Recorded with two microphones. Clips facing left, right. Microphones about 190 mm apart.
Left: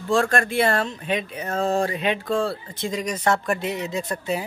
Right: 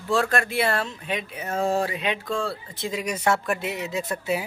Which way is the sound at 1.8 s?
45° left (ahead or behind).